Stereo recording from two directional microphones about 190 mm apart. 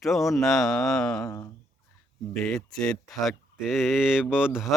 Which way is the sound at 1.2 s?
15° left (ahead or behind).